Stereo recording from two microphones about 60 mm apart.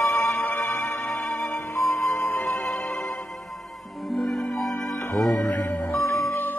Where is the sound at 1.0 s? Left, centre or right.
Centre.